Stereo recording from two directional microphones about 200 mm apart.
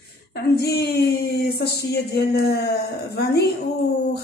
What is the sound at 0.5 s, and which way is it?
A woman's voice, 50° left (ahead or behind).